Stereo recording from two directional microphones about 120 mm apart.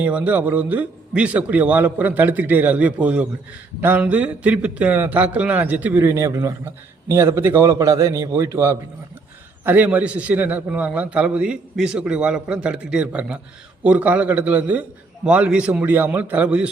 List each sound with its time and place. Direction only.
0.0 s a man's voice: 10° right (ahead or behind)